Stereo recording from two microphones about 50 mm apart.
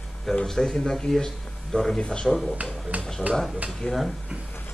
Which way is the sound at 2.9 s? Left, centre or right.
Right.